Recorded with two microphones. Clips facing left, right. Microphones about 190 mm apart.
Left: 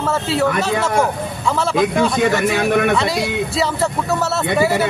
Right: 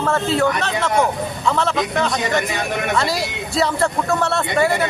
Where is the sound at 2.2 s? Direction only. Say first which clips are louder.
Left 5 dB; 55° left (ahead or behind).